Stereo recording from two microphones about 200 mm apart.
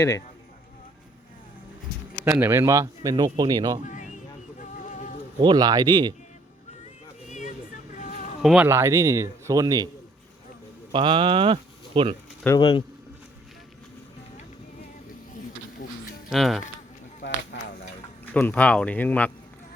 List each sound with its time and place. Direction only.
2.2 s speech: 10° right (ahead or behind)
3.8 s a sound: 40° left (ahead or behind)
4.6 s music: 40° left (ahead or behind)
5.4 s speech: 20° right (ahead or behind)
7.3 s a sound: 35° left (ahead or behind)
7.9 s insect: 40° left (ahead or behind)
8.4 s speech: 5° right (ahead or behind)
10.9 s speech: 25° right (ahead or behind)
12.5 s speech: 20° left (ahead or behind)
16.3 s speech: centre (ahead or behind)
17.2 s a sound: 55° left (ahead or behind)
18.3 s speech: 5° left (ahead or behind)